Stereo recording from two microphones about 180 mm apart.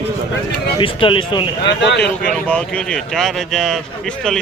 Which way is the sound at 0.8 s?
30° left (ahead or behind).